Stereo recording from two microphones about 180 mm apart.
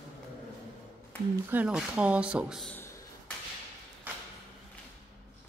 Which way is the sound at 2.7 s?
10° left (ahead or behind).